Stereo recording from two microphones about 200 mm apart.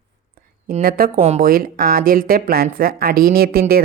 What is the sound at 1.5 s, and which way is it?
A woman's voice, 45° right (ahead or behind).